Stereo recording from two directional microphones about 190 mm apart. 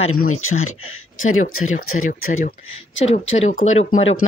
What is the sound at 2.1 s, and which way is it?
Speech, 45° left (ahead or behind).